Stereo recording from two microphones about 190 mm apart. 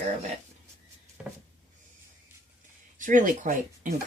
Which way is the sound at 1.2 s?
5° right (ahead or behind).